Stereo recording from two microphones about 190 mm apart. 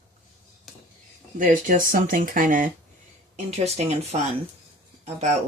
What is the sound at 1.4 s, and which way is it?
Speech, 45° right (ahead or behind).